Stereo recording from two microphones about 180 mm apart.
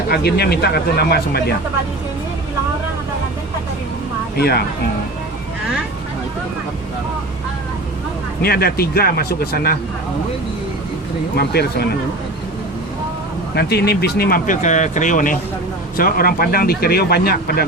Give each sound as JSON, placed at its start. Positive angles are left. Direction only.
{"t": 0.1, "sound": "speech", "side_deg": 65}
{"t": 4.4, "sound": "speech", "side_deg": 60}
{"t": 8.4, "sound": "speech", "side_deg": 60}
{"t": 11.3, "sound": "speech", "side_deg": 60}
{"t": 13.5, "sound": "speech", "side_deg": 65}